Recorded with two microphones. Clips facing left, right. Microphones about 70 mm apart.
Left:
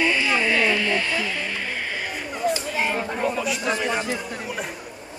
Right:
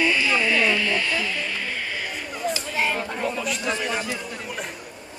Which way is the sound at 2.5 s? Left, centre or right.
Left.